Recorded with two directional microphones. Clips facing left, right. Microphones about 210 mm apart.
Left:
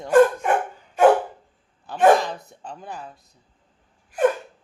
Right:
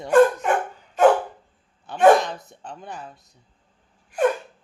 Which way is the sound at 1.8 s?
Centre (ahead or behind).